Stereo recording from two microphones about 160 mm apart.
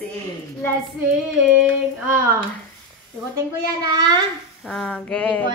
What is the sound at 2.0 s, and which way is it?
Speech, 15° right (ahead or behind).